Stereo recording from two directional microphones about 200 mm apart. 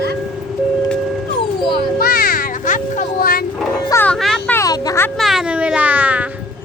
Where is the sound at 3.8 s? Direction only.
10° left (ahead or behind).